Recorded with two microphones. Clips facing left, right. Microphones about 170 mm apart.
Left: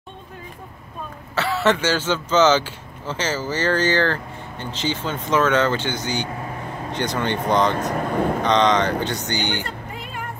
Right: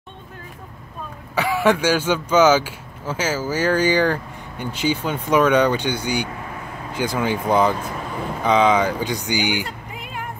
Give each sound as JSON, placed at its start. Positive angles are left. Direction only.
{"t": 1.3, "sound": "speech", "side_deg": -10}
{"t": 7.8, "sound": "speech", "side_deg": 50}
{"t": 8.4, "sound": "speech", "side_deg": -5}